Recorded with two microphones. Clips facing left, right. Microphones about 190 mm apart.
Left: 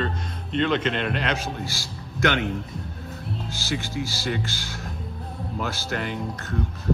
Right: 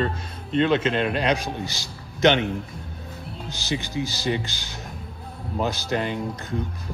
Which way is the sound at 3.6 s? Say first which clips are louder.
Right 3 dB; 20° right (ahead or behind).